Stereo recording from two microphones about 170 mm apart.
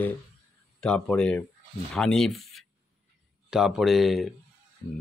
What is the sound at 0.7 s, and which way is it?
Speech, 5° left (ahead or behind).